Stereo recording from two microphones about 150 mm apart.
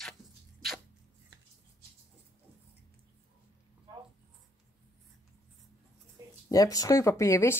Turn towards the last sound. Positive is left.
turn(degrees=20)  # may be behind; listen again after turning